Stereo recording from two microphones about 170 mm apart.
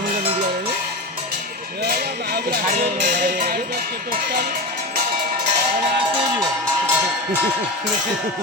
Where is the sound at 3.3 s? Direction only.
65° right (ahead or behind).